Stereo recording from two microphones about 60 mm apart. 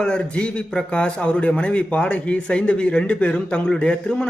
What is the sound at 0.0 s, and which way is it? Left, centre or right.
A man's voice, centre.